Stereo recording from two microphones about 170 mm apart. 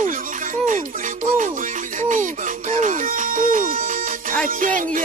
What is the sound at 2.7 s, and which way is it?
Music, 50° right (ahead or behind).